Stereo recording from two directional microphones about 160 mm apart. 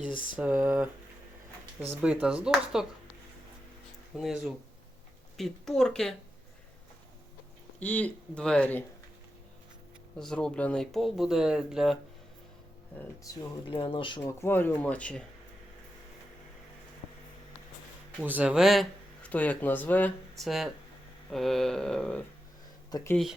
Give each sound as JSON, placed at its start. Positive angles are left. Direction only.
{"t": 0.3, "sound": "speech", "side_deg": -10}
{"t": 2.0, "sound": "speech", "side_deg": -5}
{"t": 4.2, "sound": "speech", "side_deg": 0}
{"t": 7.8, "sound": "speech", "side_deg": 10}
{"t": 10.2, "sound": "speech", "side_deg": 5}
{"t": 13.2, "sound": "speech", "side_deg": 25}
{"t": 14.2, "sound": "speech", "side_deg": 15}
{"t": 18.2, "sound": "speech", "side_deg": -10}
{"t": 22.9, "sound": "speech", "side_deg": 25}